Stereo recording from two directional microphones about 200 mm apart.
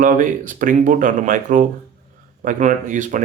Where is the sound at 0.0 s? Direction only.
40° right (ahead or behind).